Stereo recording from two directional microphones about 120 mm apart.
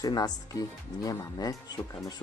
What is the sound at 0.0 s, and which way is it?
Speech, 35° left (ahead or behind).